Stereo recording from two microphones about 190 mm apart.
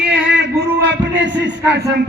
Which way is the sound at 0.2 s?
70° right (ahead or behind).